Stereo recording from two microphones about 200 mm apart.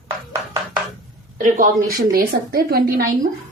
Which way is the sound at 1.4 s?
40° right (ahead or behind).